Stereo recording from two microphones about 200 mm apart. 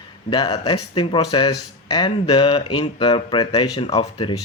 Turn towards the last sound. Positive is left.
turn(degrees=25)  # may be behind; listen again after turning